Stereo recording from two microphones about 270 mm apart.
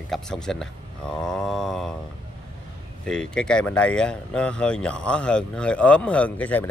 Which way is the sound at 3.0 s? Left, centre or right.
Centre.